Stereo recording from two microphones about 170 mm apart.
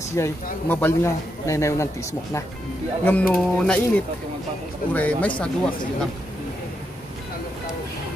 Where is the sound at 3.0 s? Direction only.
10° left (ahead or behind).